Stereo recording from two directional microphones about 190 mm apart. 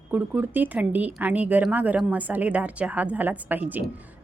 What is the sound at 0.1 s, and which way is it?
Speech, 10° right (ahead or behind).